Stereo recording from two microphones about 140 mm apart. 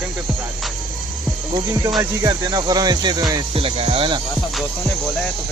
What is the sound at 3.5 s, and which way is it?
Speech, 45° right (ahead or behind).